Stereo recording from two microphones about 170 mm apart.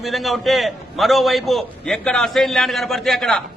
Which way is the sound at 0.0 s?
Centre (ahead or behind).